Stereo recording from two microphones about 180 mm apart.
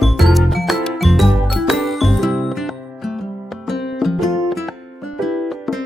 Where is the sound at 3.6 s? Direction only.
Centre (ahead or behind).